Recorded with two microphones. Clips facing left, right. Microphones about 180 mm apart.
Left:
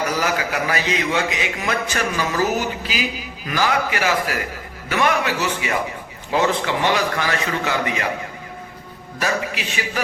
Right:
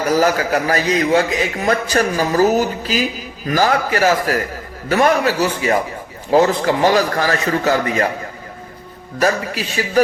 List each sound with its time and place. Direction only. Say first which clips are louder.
0.1 s a man's voice: right 7 dB; 40° right (ahead or behind)
9.1 s a man's voice: right 6 dB; 40° right (ahead or behind)